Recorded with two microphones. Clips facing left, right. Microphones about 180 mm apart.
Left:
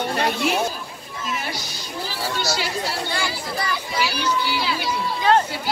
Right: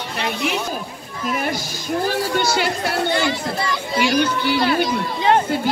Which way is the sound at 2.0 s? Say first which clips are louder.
Right 5 dB; 55° right (ahead or behind).